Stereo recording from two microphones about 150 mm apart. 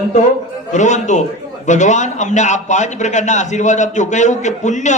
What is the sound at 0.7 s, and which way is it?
A man's voice, 55° left (ahead or behind).